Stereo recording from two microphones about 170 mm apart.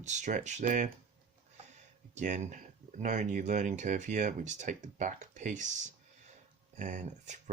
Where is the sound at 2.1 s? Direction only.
45° right (ahead or behind).